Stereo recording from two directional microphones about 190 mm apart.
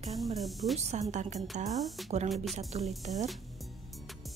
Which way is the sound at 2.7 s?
35° right (ahead or behind).